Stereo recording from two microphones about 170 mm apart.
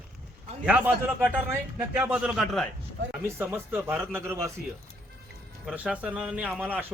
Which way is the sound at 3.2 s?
15° right (ahead or behind).